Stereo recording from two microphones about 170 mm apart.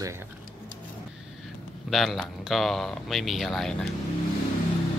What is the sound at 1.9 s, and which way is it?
Speech, centre (ahead or behind).